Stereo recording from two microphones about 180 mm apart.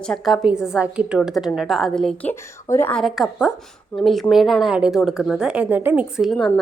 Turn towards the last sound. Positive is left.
turn(degrees=0)  # may be behind; listen again after turning